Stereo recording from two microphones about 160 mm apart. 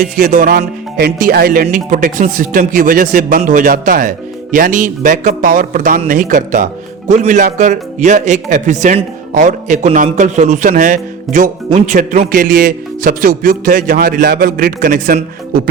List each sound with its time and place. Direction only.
0.0 s a man's voice: 60° right (ahead or behind)
1.7 s a man's voice: 60° right (ahead or behind)